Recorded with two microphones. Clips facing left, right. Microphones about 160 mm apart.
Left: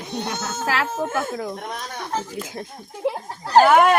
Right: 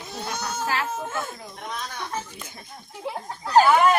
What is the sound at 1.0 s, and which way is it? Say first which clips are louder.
Speech: left 6 dB; 50° left (ahead or behind).